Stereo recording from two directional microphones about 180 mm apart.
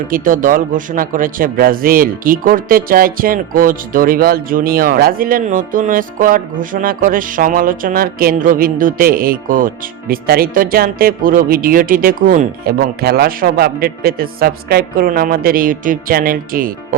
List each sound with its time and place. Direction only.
0.1 s speech: 50° right (ahead or behind)